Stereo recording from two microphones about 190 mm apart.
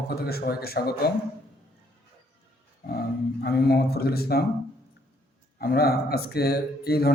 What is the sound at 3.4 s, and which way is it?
Speech, 55° left (ahead or behind).